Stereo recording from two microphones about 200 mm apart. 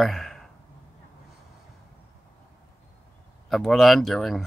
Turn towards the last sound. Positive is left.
turn(degrees=0)  # may be behind; listen again after turning